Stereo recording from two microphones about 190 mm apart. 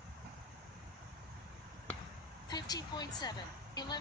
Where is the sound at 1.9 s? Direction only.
5° left (ahead or behind).